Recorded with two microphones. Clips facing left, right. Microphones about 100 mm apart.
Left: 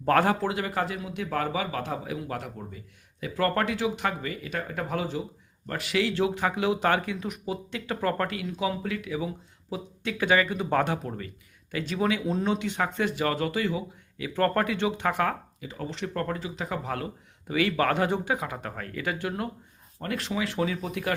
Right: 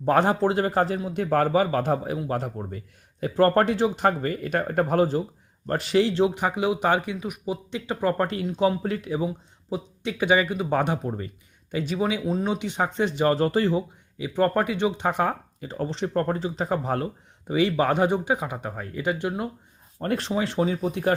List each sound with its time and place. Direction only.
0.0 s a man's voice: 20° right (ahead or behind); by 2.1 s 45° right (ahead or behind)
2.1 s a man's voice: 30° right (ahead or behind)
2.6 s speech: 50° right (ahead or behind)
5.6 s speech: 35° right (ahead or behind)
8.3 s speech: 30° right (ahead or behind); by 10.9 s 15° right (ahead or behind)
10.9 s speech: 30° right (ahead or behind)
11.7 s speech: 15° right (ahead or behind); by 13.8 s 35° right (ahead or behind)
14.2 s speech: 15° right (ahead or behind)
15.6 s a man's voice: 40° right (ahead or behind)
17.5 s speech: 25° right (ahead or behind)
20.0 s a man's voice: 35° right (ahead or behind)